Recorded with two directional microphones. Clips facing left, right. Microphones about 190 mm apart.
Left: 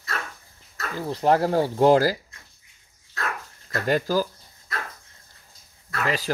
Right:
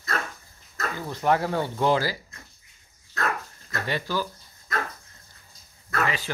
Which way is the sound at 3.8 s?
45° left (ahead or behind).